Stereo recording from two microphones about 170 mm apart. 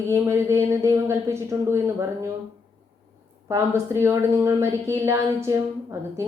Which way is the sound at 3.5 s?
15° right (ahead or behind).